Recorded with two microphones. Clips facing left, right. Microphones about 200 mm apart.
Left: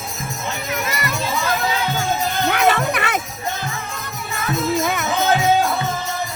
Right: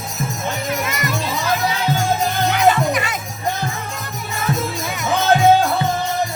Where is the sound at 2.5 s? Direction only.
65° left (ahead or behind).